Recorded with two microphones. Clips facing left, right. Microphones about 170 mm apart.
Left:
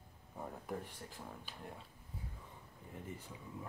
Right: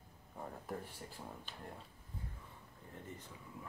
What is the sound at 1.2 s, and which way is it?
Speech, 10° right (ahead or behind).